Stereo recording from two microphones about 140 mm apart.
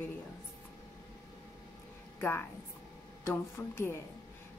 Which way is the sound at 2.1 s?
15° left (ahead or behind).